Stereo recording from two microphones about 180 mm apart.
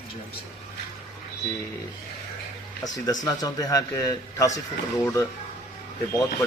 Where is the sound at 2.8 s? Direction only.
20° left (ahead or behind).